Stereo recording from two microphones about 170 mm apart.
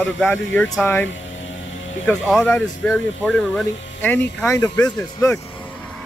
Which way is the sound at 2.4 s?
10° left (ahead or behind).